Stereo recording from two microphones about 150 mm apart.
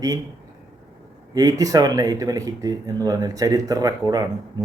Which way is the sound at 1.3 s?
25° right (ahead or behind).